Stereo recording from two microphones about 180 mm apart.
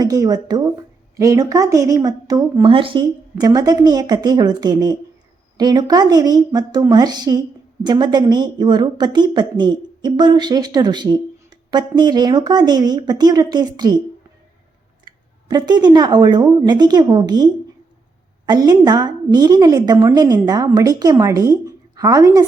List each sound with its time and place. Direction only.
0.0 s a woman's voice: 20° right (ahead or behind)
15.0 s a woman's voice: 25° right (ahead or behind)